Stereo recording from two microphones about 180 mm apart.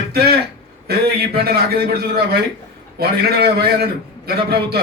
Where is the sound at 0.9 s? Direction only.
60° right (ahead or behind).